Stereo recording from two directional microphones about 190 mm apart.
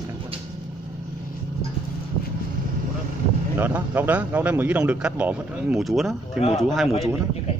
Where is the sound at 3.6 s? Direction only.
10° right (ahead or behind).